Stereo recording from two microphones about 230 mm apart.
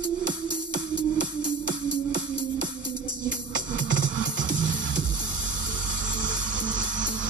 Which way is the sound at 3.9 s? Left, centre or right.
Right.